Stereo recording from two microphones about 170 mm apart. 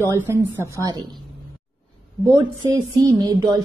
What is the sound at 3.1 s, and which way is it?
Speech, 20° right (ahead or behind).